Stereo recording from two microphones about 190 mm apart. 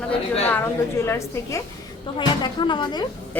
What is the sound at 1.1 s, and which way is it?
Speech, 15° left (ahead or behind).